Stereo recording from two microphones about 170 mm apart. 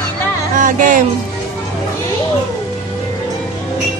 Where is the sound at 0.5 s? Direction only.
50° right (ahead or behind).